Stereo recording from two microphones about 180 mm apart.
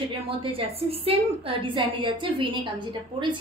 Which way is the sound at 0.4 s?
30° right (ahead or behind).